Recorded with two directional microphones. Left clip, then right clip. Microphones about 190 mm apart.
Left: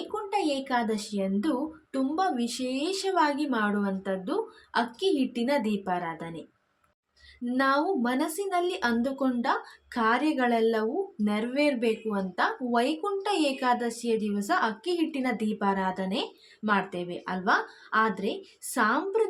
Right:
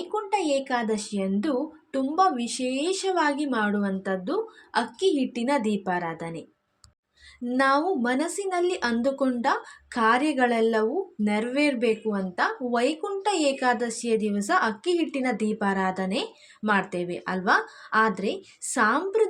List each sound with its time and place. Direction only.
0.1 s speech: 15° right (ahead or behind)
7.4 s speech: 20° right (ahead or behind)